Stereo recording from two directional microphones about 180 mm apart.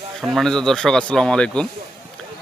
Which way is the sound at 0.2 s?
Centre (ahead or behind).